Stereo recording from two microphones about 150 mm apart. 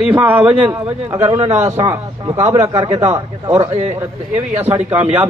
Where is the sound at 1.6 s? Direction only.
20° right (ahead or behind).